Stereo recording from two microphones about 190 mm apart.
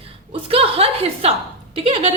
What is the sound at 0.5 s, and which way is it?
A woman's voice, 30° right (ahead or behind).